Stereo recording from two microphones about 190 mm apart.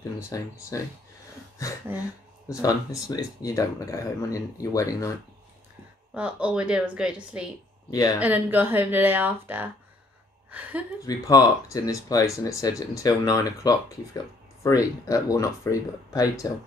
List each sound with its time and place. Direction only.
0.3 s speech: 15° left (ahead or behind)
6.1 s a woman's voice: 5° right (ahead or behind)
7.9 s speech: 20° left (ahead or behind)
8.2 s a woman's voice: 10° right (ahead or behind)
11.1 s speech: 20° left (ahead or behind)